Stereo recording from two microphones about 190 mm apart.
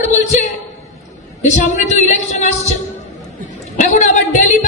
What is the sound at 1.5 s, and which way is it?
A woman's voice, 40° left (ahead or behind).